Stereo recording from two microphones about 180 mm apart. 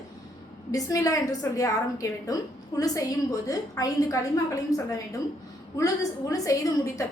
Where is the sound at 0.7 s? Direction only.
20° left (ahead or behind).